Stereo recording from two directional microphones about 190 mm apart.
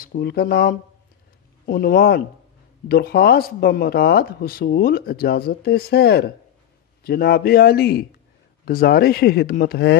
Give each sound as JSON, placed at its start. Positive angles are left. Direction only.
{"t": 0.0, "sound": "speech", "side_deg": 55}